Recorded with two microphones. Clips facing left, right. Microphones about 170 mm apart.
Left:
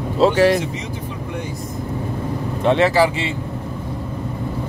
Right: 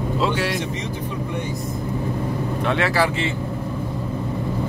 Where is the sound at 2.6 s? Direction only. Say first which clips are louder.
Left 6 dB; 25° left (ahead or behind).